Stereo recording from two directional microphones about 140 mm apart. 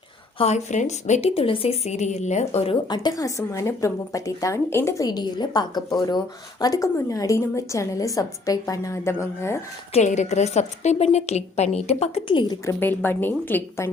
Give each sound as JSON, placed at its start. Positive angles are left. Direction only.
{"t": 0.3, "sound": "a woman's voice", "side_deg": 50}
{"t": 2.9, "sound": "a woman's voice", "side_deg": 30}
{"t": 9.9, "sound": "a woman's voice", "side_deg": 55}
{"t": 12.3, "sound": "a woman's voice", "side_deg": 35}
{"t": 12.6, "sound": "a woman's voice", "side_deg": 15}